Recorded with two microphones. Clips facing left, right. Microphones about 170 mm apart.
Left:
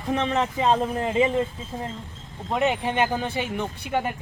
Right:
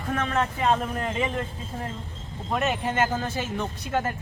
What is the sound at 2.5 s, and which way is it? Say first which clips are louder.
Speech: left 2 dB; 20° left (ahead or behind).